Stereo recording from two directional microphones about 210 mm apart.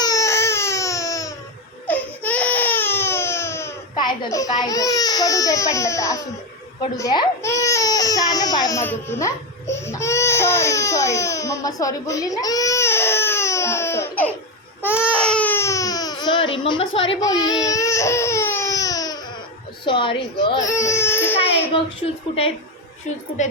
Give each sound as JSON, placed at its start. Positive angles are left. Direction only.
{"t": 0.0, "sound": "baby cry", "side_deg": 15}
{"t": 4.5, "sound": "speech", "side_deg": 20}
{"t": 6.9, "sound": "baby cry", "side_deg": 15}
{"t": 19.8, "sound": "a woman's voice", "side_deg": 25}
{"t": 21.0, "sound": "baby cry", "side_deg": 10}
{"t": 21.7, "sound": "a woman's voice", "side_deg": 25}